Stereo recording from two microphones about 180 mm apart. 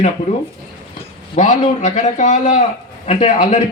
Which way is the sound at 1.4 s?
40° left (ahead or behind).